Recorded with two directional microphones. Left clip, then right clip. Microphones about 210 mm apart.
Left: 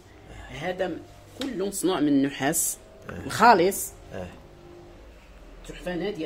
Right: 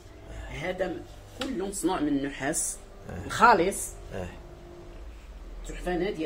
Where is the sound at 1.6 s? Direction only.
55° left (ahead or behind).